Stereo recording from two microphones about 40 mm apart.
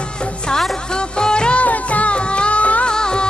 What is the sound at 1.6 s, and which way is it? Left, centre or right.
Music, left.